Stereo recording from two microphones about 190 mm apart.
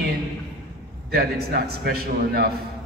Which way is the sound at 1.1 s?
55° right (ahead or behind).